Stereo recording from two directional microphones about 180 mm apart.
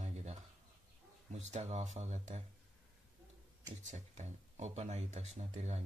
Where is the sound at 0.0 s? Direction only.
40° right (ahead or behind).